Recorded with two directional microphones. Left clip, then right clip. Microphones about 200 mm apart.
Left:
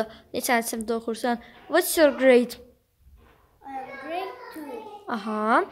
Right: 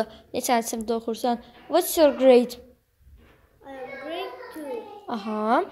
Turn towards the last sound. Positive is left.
turn(degrees=5)  # may be behind; listen again after turning